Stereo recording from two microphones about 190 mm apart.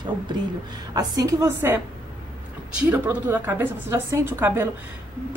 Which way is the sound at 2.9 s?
10° right (ahead or behind).